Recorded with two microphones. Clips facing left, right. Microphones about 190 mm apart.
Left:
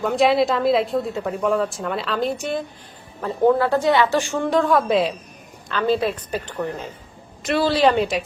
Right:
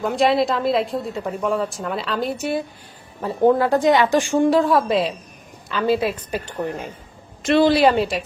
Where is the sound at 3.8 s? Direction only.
15° right (ahead or behind).